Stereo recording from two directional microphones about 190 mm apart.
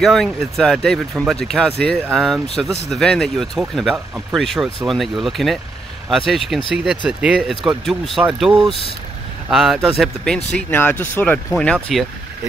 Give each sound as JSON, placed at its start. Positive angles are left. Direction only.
{"t": 0.0, "sound": "speech", "side_deg": 0}